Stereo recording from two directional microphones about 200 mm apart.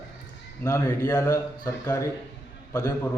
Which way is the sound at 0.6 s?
15° left (ahead or behind).